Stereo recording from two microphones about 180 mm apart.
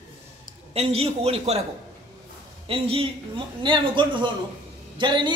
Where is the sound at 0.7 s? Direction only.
35° right (ahead or behind).